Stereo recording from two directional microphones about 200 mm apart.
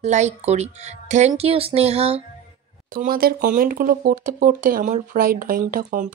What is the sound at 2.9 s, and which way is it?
Speech, 45° right (ahead or behind).